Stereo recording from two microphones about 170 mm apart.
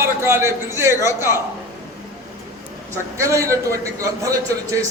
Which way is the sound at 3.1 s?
20° right (ahead or behind).